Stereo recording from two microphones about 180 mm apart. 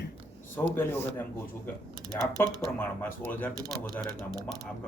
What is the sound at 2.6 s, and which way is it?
Speech, 10° left (ahead or behind).